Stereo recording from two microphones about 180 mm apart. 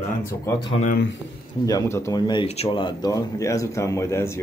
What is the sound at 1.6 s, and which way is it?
Speech, 15° left (ahead or behind).